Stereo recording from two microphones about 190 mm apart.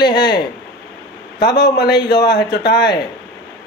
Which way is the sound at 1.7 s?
60° left (ahead or behind).